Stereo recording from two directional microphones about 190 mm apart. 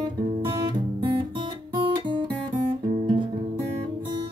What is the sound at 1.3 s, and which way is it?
Guitar, 25° right (ahead or behind).